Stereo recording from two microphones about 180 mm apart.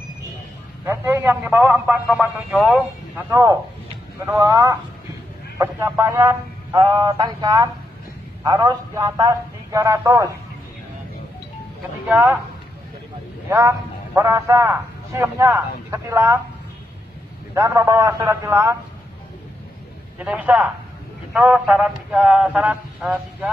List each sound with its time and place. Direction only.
0.8 s a man's voice: 15° right (ahead or behind)
2.0 s speech: centre (ahead or behind)
3.3 s a man's voice: 15° right (ahead or behind)
12.1 s a man's voice: 10° right (ahead or behind)
13.5 s a man's voice: 15° right (ahead or behind)
17.6 s a man's voice: 15° right (ahead or behind)
20.2 s a man's voice: 5° right (ahead or behind)